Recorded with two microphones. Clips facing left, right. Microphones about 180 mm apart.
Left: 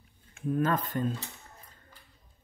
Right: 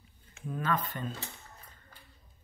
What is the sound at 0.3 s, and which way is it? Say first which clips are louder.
Speech: left 5 dB; 50° left (ahead or behind).